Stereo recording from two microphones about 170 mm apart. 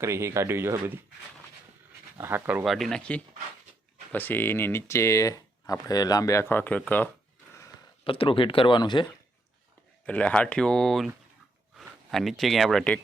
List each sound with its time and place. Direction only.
0.0 s speech: 15° right (ahead or behind)
2.1 s speech: 15° right (ahead or behind)
2.6 s speech: centre (ahead or behind)
8.0 s speech: 30° left (ahead or behind)
10.1 s speech: 5° left (ahead or behind)